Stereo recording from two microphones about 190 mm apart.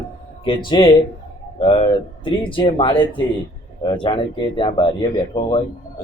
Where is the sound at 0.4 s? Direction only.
25° left (ahead or behind).